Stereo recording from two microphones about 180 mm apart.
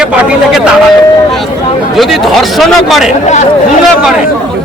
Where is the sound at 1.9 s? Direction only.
Centre (ahead or behind).